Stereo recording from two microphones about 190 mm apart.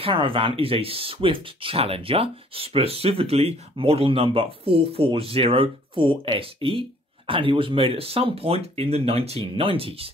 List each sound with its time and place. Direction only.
0.0 s speech: 30° right (ahead or behind)